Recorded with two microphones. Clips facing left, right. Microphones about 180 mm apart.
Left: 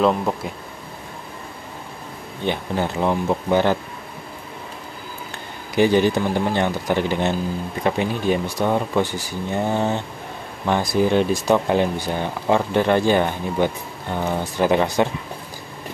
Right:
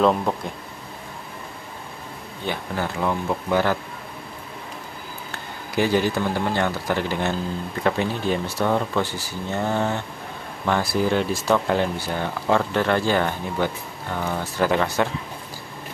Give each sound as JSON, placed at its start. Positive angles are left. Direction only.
{"t": 2.4, "sound": "speech", "side_deg": 20}
{"t": 5.3, "sound": "speech", "side_deg": 20}